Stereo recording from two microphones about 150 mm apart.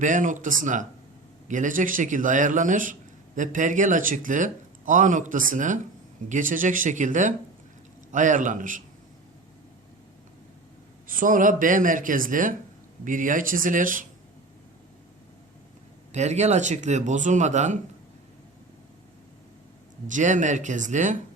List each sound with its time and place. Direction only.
0.0 s speech: 60° right (ahead or behind)
11.0 s speech: 65° right (ahead or behind)
16.1 s speech: 50° right (ahead or behind)
20.1 s speech: 55° right (ahead or behind)